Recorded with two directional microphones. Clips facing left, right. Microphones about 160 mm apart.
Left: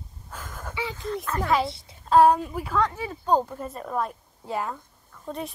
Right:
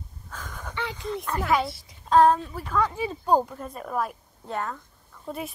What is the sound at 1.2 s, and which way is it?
Speech, 15° right (ahead or behind).